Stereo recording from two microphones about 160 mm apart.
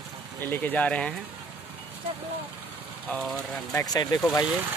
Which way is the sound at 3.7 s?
25° left (ahead or behind).